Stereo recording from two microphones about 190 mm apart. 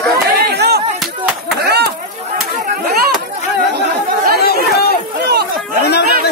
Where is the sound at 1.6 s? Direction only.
60° right (ahead or behind).